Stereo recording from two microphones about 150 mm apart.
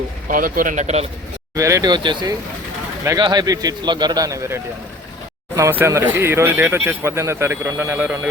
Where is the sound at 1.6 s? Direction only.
20° right (ahead or behind).